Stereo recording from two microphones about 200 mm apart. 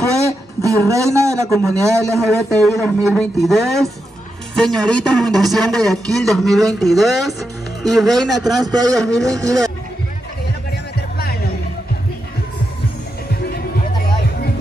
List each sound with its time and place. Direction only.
0.6 s a man's voice: 15° right (ahead or behind)
2.6 s a man's voice: centre (ahead or behind)
8.6 s a man's voice: 20° right (ahead or behind)
11.0 s music: 50° left (ahead or behind)